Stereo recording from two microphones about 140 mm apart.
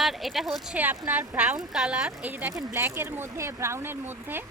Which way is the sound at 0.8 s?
15° right (ahead or behind).